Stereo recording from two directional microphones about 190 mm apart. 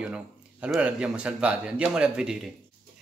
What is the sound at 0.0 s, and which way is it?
Speech, 5° right (ahead or behind).